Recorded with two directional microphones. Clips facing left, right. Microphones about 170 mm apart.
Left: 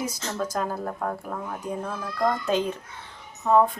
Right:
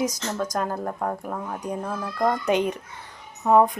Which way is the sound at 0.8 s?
10° right (ahead or behind).